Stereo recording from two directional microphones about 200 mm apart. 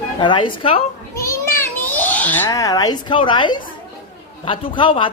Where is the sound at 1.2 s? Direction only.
10° left (ahead or behind).